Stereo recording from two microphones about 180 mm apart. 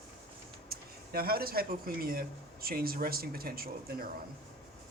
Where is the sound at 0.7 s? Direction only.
55° right (ahead or behind).